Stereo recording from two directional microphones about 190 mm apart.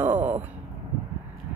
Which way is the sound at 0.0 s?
10° right (ahead or behind).